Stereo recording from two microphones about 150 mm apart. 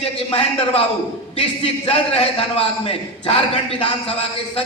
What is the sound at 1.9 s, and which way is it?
A man's voice, 40° left (ahead or behind).